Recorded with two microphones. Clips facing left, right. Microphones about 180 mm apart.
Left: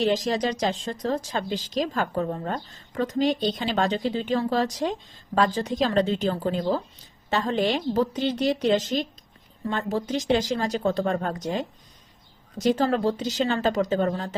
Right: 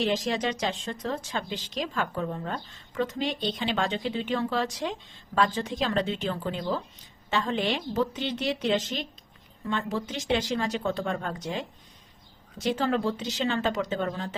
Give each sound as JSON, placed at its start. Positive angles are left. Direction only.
{"t": 0.0, "sound": "speech", "side_deg": 40}